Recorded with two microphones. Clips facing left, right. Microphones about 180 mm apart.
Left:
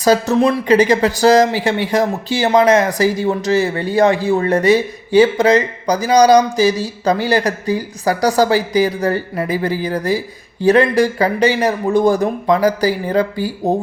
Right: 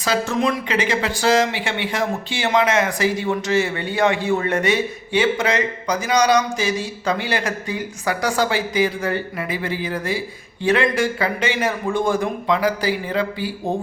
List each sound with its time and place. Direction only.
0.0 s speech: 40° left (ahead or behind)